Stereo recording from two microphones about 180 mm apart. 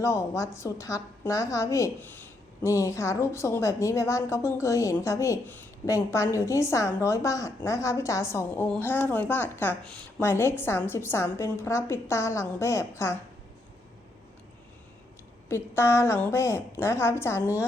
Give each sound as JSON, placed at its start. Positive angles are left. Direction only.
{"t": 0.0, "sound": "a woman's voice", "side_deg": 15}
{"t": 15.4, "sound": "a woman's voice", "side_deg": 15}